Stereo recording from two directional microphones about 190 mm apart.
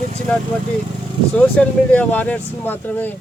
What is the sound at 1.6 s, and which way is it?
Speech, 5° left (ahead or behind).